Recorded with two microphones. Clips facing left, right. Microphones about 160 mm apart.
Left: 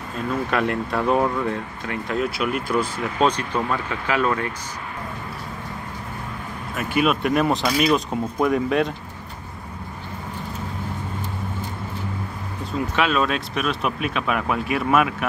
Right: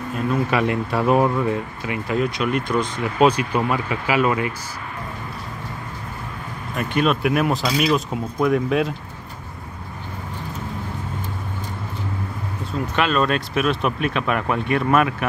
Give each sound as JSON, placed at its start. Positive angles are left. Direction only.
{"t": 0.5, "sound": "speech", "side_deg": -5}
{"t": 3.2, "sound": "speech", "side_deg": -10}
{"t": 6.8, "sound": "speech", "side_deg": 5}
{"t": 12.7, "sound": "speech", "side_deg": 0}